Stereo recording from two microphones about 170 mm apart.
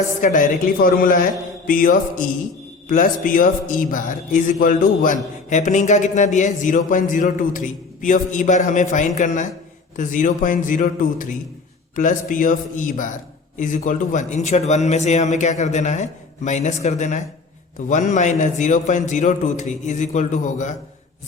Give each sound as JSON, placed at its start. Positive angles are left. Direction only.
{"t": 0.2, "sound": "a man's voice", "side_deg": 50}